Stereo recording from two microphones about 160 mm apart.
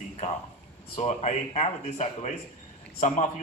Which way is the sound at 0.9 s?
45° left (ahead or behind).